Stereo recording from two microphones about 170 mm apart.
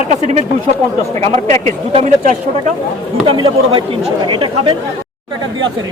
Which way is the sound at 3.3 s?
30° right (ahead or behind).